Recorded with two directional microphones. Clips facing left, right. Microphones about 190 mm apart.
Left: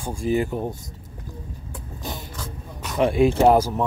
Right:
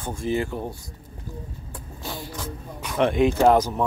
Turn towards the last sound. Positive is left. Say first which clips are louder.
# left 1 dB
turn(degrees=10)  # may be behind; listen again after turning